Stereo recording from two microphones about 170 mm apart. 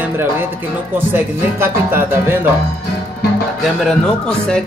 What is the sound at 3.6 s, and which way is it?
Speech, centre (ahead or behind).